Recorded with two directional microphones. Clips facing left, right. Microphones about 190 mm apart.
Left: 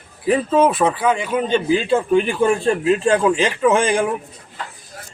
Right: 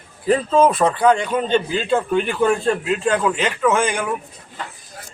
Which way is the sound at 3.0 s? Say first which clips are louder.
Even; 30° left (ahead or behind).